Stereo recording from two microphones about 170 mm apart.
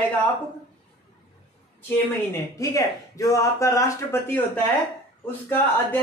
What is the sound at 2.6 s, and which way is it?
Speech, 20° left (ahead or behind).